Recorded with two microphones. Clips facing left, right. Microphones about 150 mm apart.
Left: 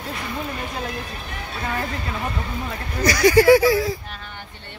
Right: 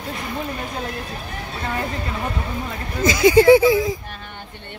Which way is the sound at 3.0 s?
20° right (ahead or behind).